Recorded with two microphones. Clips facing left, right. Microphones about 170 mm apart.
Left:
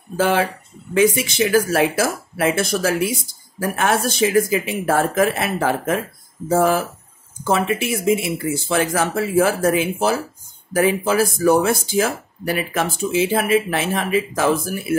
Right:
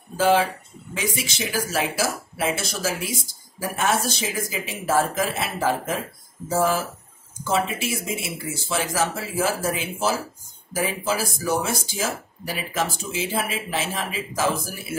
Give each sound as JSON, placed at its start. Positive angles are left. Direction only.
{"t": 0.2, "sound": "speech", "side_deg": 55}